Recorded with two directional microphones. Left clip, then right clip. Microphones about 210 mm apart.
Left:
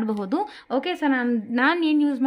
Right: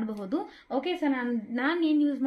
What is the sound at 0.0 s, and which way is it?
A woman's voice, 30° left (ahead or behind).